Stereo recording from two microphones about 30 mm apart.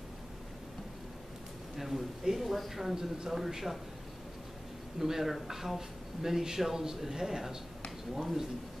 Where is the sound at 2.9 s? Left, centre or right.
Centre.